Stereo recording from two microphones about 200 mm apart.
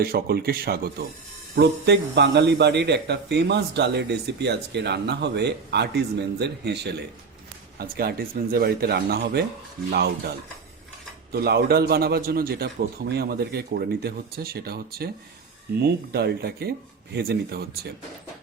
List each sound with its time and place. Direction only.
0.0 s a man's voice: 50° right (ahead or behind)